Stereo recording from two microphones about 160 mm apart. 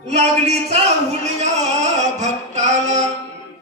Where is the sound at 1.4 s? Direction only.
45° right (ahead or behind).